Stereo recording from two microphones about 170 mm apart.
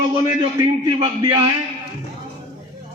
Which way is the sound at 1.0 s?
30° right (ahead or behind).